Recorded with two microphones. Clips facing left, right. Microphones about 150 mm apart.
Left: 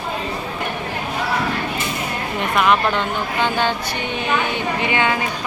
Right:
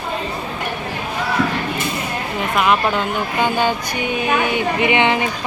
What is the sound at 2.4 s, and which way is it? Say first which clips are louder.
A woman's voice: even; 5° right (ahead or behind).